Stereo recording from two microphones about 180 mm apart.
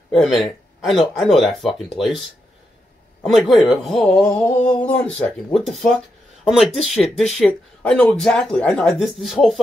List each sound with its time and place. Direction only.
0.1 s speech: centre (ahead or behind)
3.2 s speech: centre (ahead or behind)